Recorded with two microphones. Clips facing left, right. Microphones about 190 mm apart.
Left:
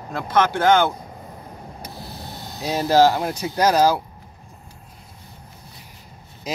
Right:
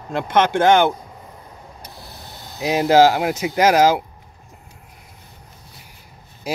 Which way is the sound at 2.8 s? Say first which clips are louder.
Right 2 dB; 85° right.